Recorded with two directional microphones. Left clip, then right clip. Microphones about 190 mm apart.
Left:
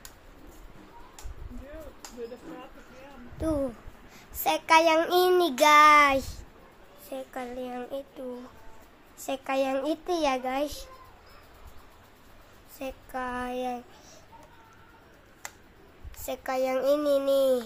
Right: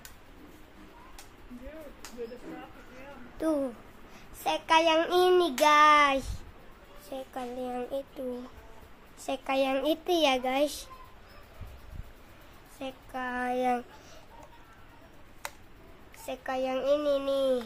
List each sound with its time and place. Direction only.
4.4 s a child's voice: 20° left (ahead or behind); by 8.0 s centre (ahead or behind)
9.2 s a woman's voice: centre (ahead or behind); by 10.9 s 20° right (ahead or behind)
12.7 s a woman's voice: 10° left (ahead or behind)
13.3 s a woman's voice: 5° right (ahead or behind)
13.6 s a woman's voice: 15° right (ahead or behind)
16.3 s a child's voice: 20° left (ahead or behind)